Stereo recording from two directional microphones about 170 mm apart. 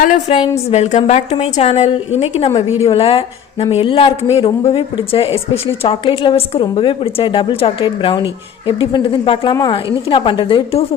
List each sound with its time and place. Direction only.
0.0 s a woman's voice: 50° left (ahead or behind); by 10.8 s 35° left (ahead or behind)